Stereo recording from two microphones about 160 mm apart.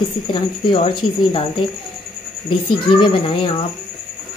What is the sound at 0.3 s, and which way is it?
Speech, 30° left (ahead or behind).